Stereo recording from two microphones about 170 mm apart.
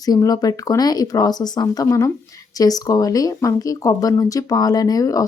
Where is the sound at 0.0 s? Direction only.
20° left (ahead or behind).